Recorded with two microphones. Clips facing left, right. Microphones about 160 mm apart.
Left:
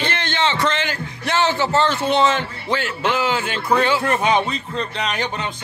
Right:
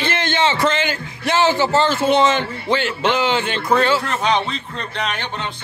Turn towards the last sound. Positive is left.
turn(degrees=45)  # may be behind; listen again after turning